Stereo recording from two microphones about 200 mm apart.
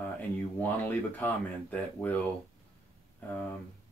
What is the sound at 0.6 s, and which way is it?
Speech, 10° left (ahead or behind).